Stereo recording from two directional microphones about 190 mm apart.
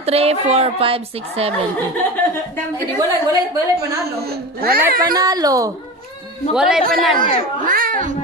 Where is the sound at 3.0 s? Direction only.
20° right (ahead or behind).